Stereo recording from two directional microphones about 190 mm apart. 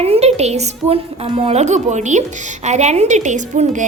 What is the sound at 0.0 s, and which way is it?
A woman's voice, 35° right (ahead or behind).